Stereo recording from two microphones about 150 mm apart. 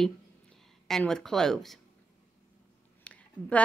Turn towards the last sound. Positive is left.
turn(degrees=10)  # may be behind; listen again after turning